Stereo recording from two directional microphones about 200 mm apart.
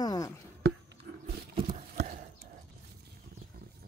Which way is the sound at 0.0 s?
20° left (ahead or behind).